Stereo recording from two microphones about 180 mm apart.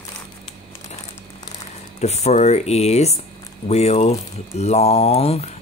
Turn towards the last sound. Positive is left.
turn(degrees=35)  # may be behind; listen again after turning